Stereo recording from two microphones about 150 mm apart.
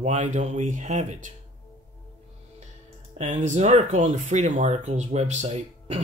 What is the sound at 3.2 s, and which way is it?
Speech, 50° right (ahead or behind).